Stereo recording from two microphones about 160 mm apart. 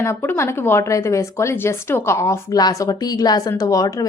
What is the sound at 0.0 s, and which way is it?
A woman's voice, 15° left (ahead or behind).